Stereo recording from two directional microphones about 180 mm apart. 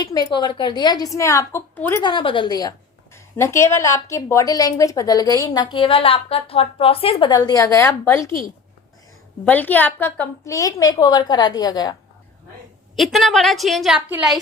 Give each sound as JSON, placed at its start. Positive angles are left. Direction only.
{"t": 0.0, "sound": "a woman's voice", "side_deg": 20}
{"t": 2.0, "sound": "a woman's voice", "side_deg": 25}
{"t": 5.7, "sound": "a woman's voice", "side_deg": 30}
{"t": 9.4, "sound": "a woman's voice", "side_deg": 10}
{"t": 13.0, "sound": "a woman's voice", "side_deg": 0}